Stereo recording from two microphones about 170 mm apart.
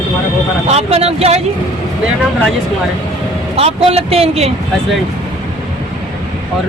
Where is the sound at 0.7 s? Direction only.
35° right (ahead or behind).